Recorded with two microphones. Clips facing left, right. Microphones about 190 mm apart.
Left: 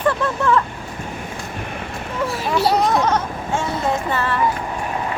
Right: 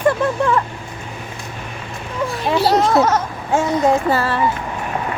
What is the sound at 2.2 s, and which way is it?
A child's voice, 5° left (ahead or behind).